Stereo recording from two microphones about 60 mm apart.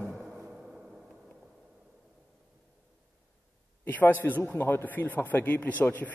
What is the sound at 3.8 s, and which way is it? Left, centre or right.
A man's voice, left.